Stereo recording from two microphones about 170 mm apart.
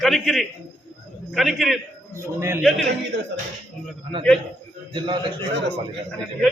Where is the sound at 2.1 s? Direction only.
15° right (ahead or behind).